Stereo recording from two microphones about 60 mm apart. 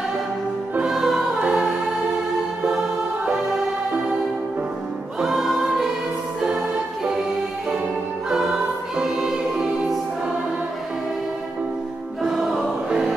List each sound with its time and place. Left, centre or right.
0.8 s music: centre
5.2 s music: centre
6.4 s music: centre
8.3 s music: centre
12.2 s music: centre